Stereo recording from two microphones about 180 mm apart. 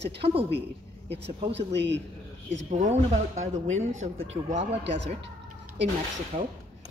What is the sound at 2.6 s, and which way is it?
A woman's voice, 40° right (ahead or behind).